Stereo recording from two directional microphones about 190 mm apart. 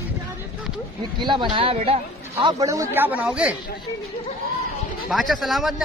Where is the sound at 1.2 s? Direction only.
25° right (ahead or behind); by 3.6 s 5° right (ahead or behind).